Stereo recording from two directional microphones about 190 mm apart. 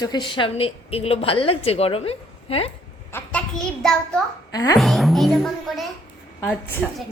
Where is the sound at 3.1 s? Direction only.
10° left (ahead or behind).